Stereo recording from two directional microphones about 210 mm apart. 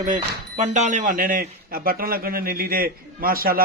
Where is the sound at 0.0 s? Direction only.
35° right (ahead or behind).